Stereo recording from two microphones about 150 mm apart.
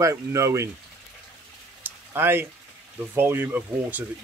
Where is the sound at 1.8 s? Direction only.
15° right (ahead or behind).